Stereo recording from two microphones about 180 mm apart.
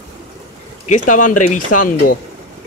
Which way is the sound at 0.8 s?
45° left (ahead or behind).